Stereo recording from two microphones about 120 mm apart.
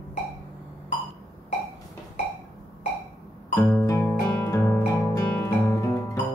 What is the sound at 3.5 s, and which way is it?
Music, 20° left (ahead or behind).